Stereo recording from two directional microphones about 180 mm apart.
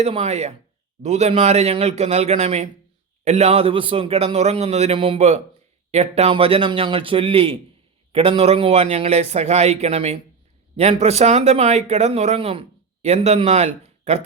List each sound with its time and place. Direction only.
0.0 s speech: 35° right (ahead or behind)